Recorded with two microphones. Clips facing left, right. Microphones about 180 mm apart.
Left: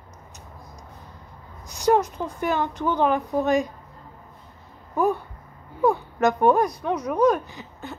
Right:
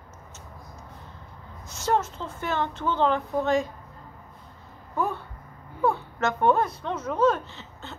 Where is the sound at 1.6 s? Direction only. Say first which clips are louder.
Left 6 dB; 15° left (ahead or behind).